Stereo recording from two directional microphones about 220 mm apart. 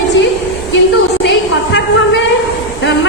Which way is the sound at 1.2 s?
55° left (ahead or behind).